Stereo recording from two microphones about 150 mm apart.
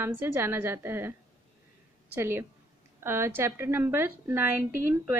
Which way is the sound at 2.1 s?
15° right (ahead or behind).